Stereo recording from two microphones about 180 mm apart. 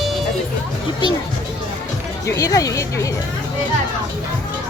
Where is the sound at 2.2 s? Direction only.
20° left (ahead or behind).